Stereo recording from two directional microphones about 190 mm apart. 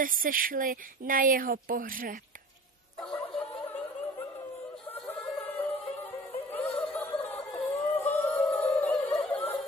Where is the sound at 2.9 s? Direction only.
5° left (ahead or behind).